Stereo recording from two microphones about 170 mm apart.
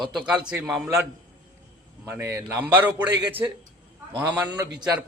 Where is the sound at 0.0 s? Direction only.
5° right (ahead or behind).